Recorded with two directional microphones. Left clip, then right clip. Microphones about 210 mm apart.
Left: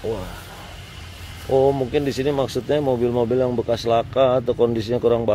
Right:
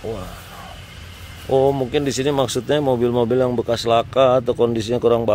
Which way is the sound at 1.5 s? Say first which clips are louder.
Right 1 dB; 15° right (ahead or behind).